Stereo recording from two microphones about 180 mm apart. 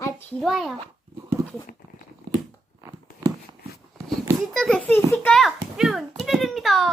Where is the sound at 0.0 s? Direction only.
10° left (ahead or behind).